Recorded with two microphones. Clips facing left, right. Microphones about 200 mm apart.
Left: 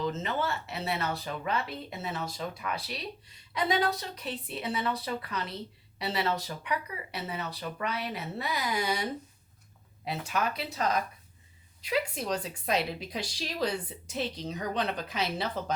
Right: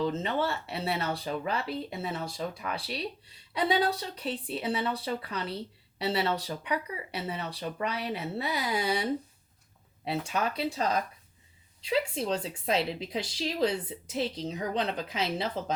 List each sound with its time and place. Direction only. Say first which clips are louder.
0.0 s a woman's voice: right 2 dB; 30° right (ahead or behind)